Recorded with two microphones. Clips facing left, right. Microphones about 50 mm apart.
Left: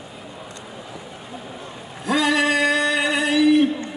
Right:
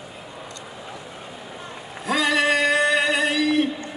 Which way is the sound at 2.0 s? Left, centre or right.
Centre.